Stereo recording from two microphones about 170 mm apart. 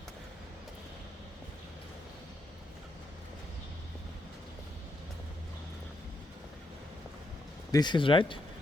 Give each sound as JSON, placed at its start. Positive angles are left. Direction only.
{"t": 7.7, "sound": "speech", "side_deg": 25}